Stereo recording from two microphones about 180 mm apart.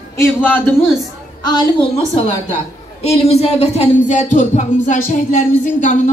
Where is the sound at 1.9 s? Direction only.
35° left (ahead or behind).